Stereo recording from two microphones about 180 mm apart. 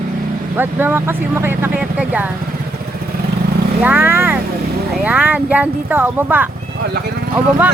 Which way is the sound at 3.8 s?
10° right (ahead or behind).